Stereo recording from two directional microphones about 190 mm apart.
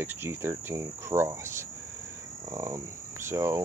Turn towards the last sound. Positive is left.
turn(degrees=-15)  # may be behind; listen again after turning